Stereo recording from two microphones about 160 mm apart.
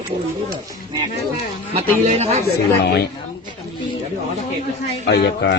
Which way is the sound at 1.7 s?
45° right (ahead or behind).